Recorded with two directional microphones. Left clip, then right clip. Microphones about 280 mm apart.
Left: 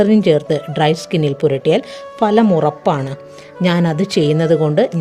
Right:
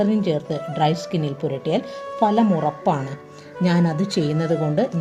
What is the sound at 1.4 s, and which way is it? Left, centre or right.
Speech, left.